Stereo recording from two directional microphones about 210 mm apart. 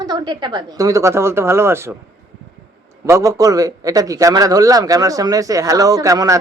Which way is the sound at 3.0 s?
15° right (ahead or behind).